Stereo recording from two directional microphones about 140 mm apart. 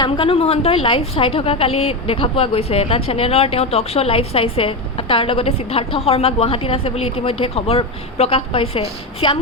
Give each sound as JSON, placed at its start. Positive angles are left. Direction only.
{"t": 0.0, "sound": "a woman's voice", "side_deg": 40}